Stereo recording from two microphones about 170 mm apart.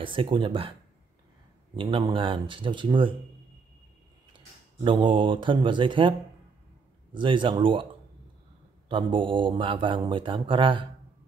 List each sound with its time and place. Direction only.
0.0 s speech: 30° right (ahead or behind)
1.8 s speech: 30° right (ahead or behind)
4.8 s speech: 30° right (ahead or behind)
7.2 s speech: 30° right (ahead or behind)
8.8 s speech: 30° right (ahead or behind)